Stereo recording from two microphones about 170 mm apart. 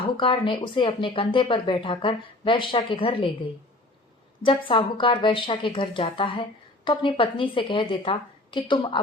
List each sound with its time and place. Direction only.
0.0 s a woman's voice: 30° left (ahead or behind)
4.4 s a woman's voice: 30° left (ahead or behind)